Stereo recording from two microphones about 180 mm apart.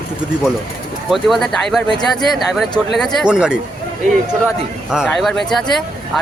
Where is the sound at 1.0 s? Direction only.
Centre (ahead or behind).